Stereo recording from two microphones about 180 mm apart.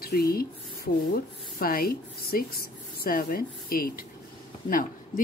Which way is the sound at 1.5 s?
55° left (ahead or behind).